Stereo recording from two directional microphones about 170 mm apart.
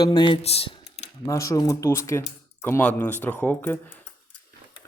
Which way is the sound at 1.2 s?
20° left (ahead or behind).